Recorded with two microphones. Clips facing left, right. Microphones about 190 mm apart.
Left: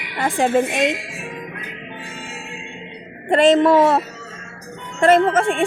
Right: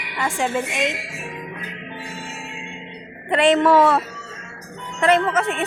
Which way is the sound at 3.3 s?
45° left (ahead or behind).